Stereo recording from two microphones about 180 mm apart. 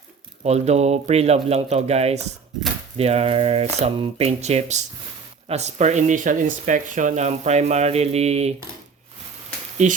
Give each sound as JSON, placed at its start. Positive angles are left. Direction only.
{"t": 0.4, "sound": "speech", "side_deg": -35}
{"t": 9.8, "sound": "speech", "side_deg": -40}